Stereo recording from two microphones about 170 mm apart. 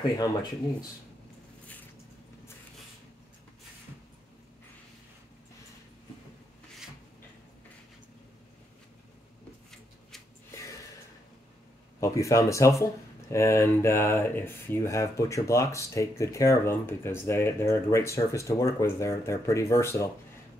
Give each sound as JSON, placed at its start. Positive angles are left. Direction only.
{"t": 0.2, "sound": "speech", "side_deg": 25}
{"t": 12.0, "sound": "speech", "side_deg": 20}